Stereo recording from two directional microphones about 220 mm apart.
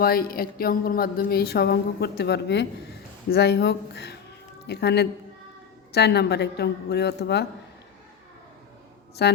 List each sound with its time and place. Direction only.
0.0 s speech: 45° left (ahead or behind)
9.2 s speech: 50° left (ahead or behind)